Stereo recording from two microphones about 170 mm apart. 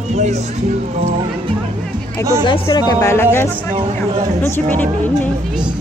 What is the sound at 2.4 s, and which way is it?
A woman's voice, 25° left (ahead or behind).